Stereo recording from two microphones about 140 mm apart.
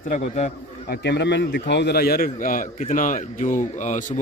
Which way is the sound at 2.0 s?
90° left.